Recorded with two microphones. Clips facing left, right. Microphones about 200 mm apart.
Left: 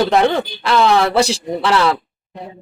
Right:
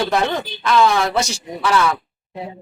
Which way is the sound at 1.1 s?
30° left (ahead or behind).